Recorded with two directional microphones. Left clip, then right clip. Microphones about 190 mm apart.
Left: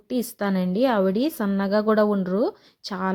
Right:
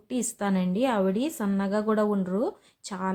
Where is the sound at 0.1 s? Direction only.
30° left (ahead or behind).